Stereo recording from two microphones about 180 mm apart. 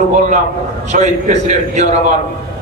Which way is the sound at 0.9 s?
40° right (ahead or behind).